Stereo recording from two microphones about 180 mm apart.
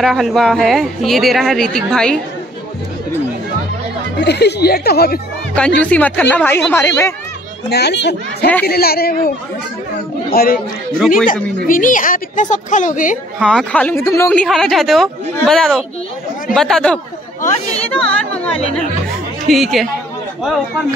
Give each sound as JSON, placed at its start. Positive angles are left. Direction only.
{"t": 0.0, "sound": "speech", "side_deg": 0}
{"t": 4.2, "sound": "speech", "side_deg": 70}
{"t": 5.8, "sound": "speech", "side_deg": 10}
{"t": 7.7, "sound": "a child's voice", "side_deg": 70}
{"t": 8.6, "sound": "speech", "side_deg": 60}
{"t": 10.3, "sound": "speech", "side_deg": 55}
{"t": 11.6, "sound": "a woman's voice", "side_deg": 50}
{"t": 13.5, "sound": "speech", "side_deg": 5}
{"t": 17.4, "sound": "speech", "side_deg": 40}
{"t": 17.9, "sound": "speech", "side_deg": 5}